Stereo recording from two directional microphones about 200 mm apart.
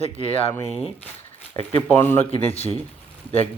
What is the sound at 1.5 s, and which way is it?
Speech, 15° left (ahead or behind).